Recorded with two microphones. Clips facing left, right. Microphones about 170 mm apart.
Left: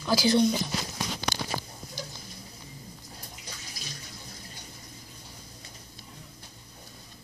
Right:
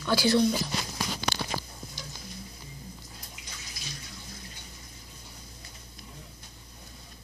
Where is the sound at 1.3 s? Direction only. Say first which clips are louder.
Even; 45° left (ahead or behind).